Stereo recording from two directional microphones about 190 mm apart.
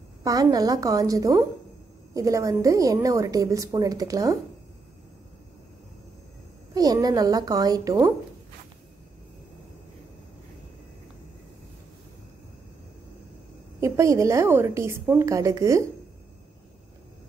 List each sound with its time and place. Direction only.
0.2 s a woman's voice: 20° right (ahead or behind)
6.7 s a woman's voice: 20° right (ahead or behind)
13.7 s a woman's voice: 15° right (ahead or behind)